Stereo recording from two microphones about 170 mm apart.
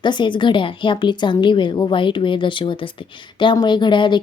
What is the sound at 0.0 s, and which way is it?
Speech, 25° left (ahead or behind).